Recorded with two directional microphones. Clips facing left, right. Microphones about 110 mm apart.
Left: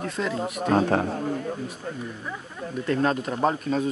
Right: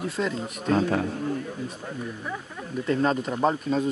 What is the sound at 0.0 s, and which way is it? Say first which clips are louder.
Speech: right 1 dB; centre (ahead or behind).